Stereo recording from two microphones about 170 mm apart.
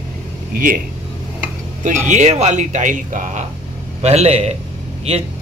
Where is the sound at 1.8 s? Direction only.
45° right (ahead or behind).